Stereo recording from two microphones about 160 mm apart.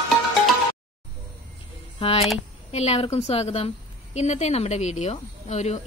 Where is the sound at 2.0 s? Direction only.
40° left (ahead or behind).